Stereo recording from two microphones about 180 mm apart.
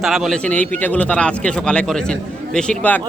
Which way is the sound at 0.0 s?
Centre (ahead or behind).